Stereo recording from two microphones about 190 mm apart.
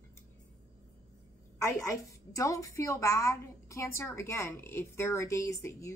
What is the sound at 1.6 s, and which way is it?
A woman's voice, 15° left (ahead or behind).